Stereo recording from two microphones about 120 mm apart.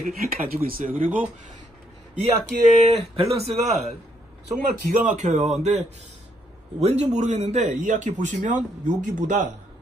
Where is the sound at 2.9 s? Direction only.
55° right (ahead or behind).